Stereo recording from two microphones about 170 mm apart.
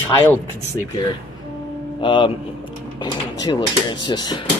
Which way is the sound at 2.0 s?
30° left (ahead or behind).